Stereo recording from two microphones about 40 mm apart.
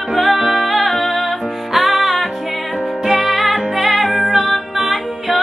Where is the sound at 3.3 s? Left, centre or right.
Centre.